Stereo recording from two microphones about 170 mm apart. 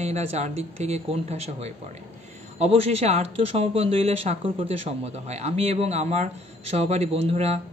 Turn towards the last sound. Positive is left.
turn(degrees=-40)  # may be behind; listen again after turning